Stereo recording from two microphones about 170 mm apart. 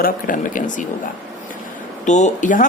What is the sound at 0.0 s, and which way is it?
Speech, 50° left (ahead or behind).